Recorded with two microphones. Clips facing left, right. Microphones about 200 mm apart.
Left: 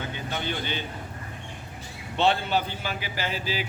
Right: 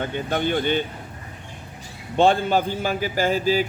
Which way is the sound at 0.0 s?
55° right (ahead or behind).